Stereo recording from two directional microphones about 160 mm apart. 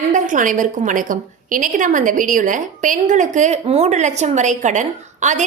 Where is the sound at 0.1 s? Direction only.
55° right (ahead or behind).